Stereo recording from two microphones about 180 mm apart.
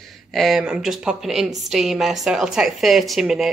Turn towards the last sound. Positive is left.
turn(degrees=0)  # may be behind; listen again after turning